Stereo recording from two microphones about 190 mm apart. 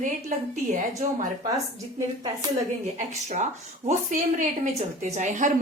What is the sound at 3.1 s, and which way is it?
A woman's voice, 40° right (ahead or behind).